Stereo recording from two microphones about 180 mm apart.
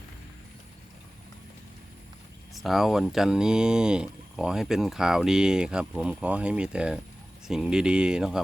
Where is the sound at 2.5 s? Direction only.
Centre (ahead or behind).